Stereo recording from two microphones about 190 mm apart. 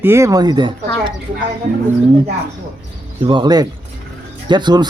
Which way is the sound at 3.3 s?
25° right (ahead or behind).